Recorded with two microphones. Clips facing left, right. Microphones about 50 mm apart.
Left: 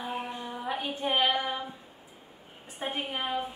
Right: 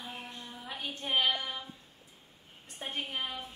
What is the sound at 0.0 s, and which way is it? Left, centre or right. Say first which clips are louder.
Female singing: left 9 dB; centre.